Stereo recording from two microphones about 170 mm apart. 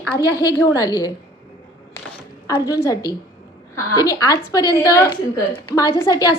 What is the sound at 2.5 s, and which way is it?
A woman's voice, 15° left (ahead or behind).